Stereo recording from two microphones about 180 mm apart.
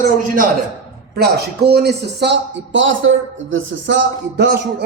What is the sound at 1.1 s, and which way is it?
A man's voice, 65° right (ahead or behind).